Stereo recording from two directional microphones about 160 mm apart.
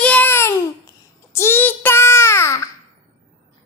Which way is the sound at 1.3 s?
15° left (ahead or behind).